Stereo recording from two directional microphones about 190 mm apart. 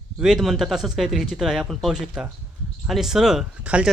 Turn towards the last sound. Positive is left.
turn(degrees=-5)  # may be behind; listen again after turning